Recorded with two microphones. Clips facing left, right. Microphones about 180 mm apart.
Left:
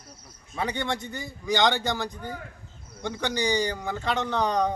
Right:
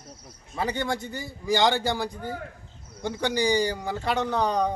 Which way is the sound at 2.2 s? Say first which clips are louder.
Right 3 dB; 45° right (ahead or behind).